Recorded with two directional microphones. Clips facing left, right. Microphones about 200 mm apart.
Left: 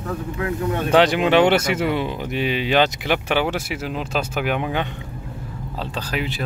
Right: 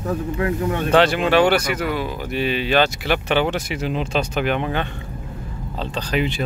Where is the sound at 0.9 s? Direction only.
15° left (ahead or behind).